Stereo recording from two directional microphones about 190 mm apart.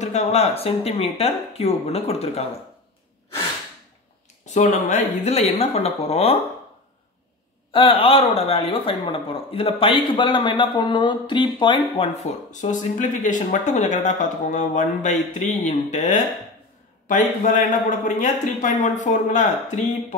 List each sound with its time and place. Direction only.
0.0 s a man's voice: 35° left (ahead or behind)
4.6 s a man's voice: 40° left (ahead or behind)
7.7 s a man's voice: 30° left (ahead or behind)